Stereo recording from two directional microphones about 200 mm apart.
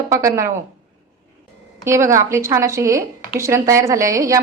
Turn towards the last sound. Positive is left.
turn(degrees=-15)  # may be behind; listen again after turning